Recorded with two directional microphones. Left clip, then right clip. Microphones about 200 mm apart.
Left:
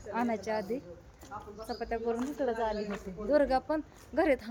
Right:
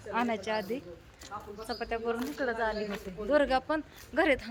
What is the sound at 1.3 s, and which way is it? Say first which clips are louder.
Speech: right 2 dB; 35° right (ahead or behind).